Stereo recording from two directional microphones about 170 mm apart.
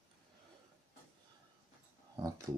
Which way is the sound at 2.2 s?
20° right (ahead or behind).